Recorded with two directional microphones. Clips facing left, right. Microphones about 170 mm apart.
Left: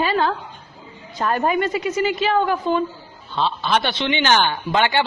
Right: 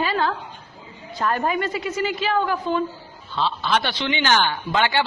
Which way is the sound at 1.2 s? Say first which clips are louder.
Left 3 dB; 20° left (ahead or behind).